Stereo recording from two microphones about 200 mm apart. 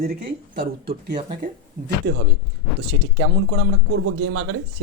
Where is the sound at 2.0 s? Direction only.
45° right (ahead or behind).